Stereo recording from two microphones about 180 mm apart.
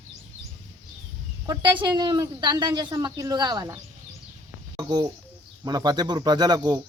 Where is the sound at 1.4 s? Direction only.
25° right (ahead or behind).